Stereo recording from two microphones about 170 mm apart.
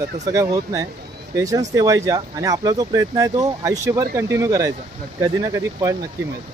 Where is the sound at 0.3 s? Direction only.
20° right (ahead or behind).